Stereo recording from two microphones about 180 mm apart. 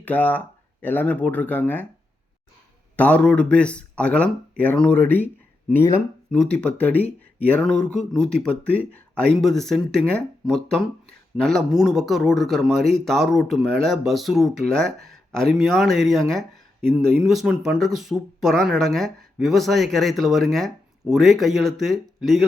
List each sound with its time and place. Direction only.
0.0 s speech: 10° left (ahead or behind)
2.9 s speech: 10° left (ahead or behind)